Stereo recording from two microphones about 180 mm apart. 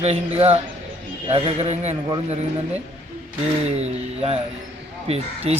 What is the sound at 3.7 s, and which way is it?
A man's voice, 35° right (ahead or behind).